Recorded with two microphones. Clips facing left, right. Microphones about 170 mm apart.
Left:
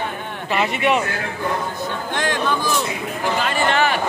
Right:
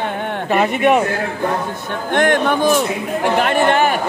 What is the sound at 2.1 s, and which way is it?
A man's voice, 60° right (ahead or behind).